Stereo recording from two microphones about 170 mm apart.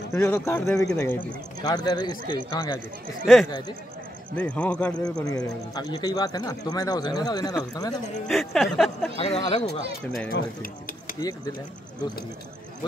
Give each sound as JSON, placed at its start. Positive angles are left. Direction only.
{"t": 0.1, "sound": "speech", "side_deg": 10}
{"t": 1.7, "sound": "speech", "side_deg": 25}
{"t": 4.4, "sound": "speech", "side_deg": 5}
{"t": 5.0, "sound": "speech", "side_deg": 20}
{"t": 8.3, "sound": "music", "side_deg": 0}
{"t": 9.1, "sound": "speech", "side_deg": 35}
{"t": 10.3, "sound": "speech", "side_deg": 55}